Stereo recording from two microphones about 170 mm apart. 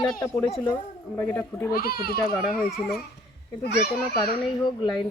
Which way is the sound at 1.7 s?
60° left (ahead or behind).